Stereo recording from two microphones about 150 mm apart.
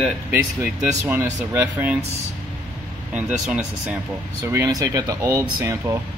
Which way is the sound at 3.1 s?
5° right (ahead or behind).